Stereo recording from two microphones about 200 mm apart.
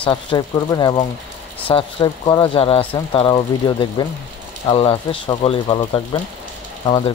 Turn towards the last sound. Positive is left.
turn(degrees=25)  # may be behind; listen again after turning